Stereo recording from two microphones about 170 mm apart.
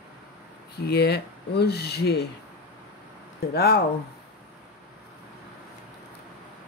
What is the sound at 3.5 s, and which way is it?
Speech, 70° left (ahead or behind).